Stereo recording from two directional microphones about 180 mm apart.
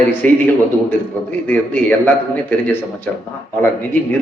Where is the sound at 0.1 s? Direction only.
10° left (ahead or behind).